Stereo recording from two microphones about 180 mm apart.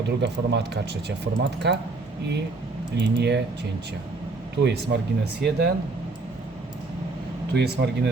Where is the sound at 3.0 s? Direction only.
70° right (ahead or behind).